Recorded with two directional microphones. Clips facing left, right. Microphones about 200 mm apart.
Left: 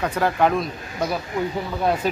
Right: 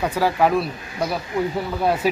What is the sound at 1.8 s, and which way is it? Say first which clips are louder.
Speech: right 1 dB; 5° right (ahead or behind).